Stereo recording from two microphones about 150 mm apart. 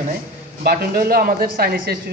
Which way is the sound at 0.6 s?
85° right.